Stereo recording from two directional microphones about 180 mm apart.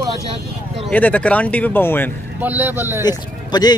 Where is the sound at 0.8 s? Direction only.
10° left (ahead or behind).